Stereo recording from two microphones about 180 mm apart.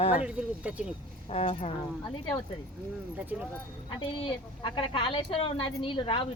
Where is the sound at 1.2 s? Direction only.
35° left (ahead or behind).